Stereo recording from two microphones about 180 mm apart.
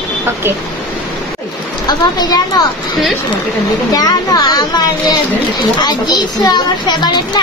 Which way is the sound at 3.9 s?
20° left (ahead or behind).